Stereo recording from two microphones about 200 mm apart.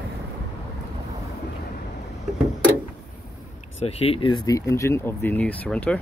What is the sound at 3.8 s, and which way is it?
Speech, 30° left (ahead or behind).